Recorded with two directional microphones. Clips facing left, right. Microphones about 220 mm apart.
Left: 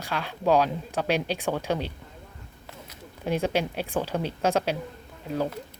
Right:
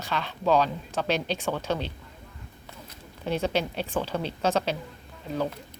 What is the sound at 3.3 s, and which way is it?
Speech, 10° left (ahead or behind).